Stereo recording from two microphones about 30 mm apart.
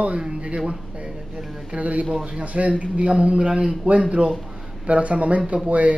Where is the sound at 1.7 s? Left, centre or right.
Right.